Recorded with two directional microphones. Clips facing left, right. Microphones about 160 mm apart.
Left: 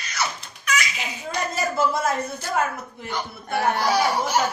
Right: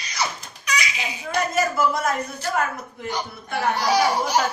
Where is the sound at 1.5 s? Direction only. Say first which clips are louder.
Even; 25° left (ahead or behind).